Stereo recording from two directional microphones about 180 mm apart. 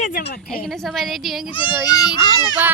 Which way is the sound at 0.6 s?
Centre (ahead or behind).